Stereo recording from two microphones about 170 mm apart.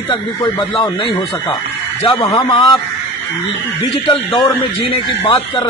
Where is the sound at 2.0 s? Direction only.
30° left (ahead or behind).